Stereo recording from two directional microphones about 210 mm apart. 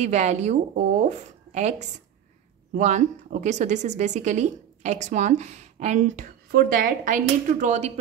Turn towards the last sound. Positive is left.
turn(degrees=-35)  # may be behind; listen again after turning